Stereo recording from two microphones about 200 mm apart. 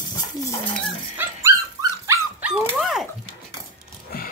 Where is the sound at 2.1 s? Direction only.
10° right (ahead or behind).